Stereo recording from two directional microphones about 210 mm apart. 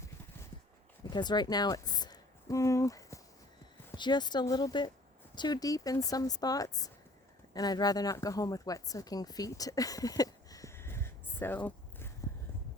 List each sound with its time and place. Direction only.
1.1 s speech: 20° left (ahead or behind)